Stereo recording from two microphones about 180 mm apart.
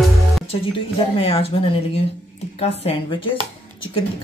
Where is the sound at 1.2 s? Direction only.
30° left (ahead or behind).